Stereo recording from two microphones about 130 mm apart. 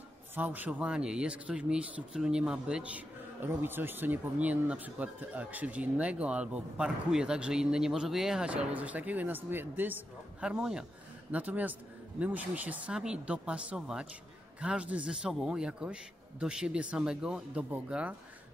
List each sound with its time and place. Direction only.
0.3 s speech: 15° right (ahead or behind)